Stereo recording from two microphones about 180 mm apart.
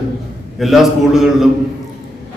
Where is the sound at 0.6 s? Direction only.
Centre (ahead or behind).